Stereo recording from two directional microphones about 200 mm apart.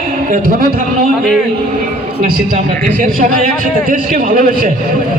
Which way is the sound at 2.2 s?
45° right (ahead or behind).